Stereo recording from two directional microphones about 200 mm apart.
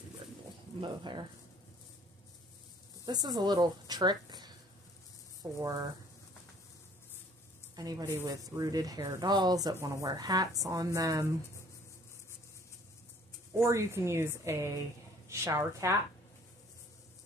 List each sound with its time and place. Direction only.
0.7 s speech: 25° right (ahead or behind)
3.1 s speech: 20° right (ahead or behind)
7.7 s speech: 20° right (ahead or behind)
13.5 s speech: 15° right (ahead or behind)